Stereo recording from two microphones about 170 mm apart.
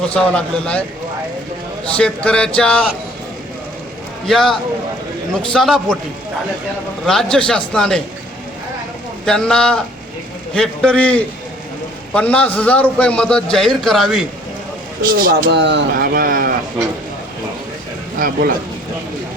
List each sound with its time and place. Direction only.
0.1 s speech: 5° left (ahead or behind)
2.0 s a man's voice: 5° left (ahead or behind)
4.3 s a man's voice: centre (ahead or behind)
7.0 s a man's voice: 5° left (ahead or behind)
9.2 s a man's voice: 5° left (ahead or behind)
15.0 s speech: 55° right (ahead or behind)
18.2 s speech: 55° right (ahead or behind)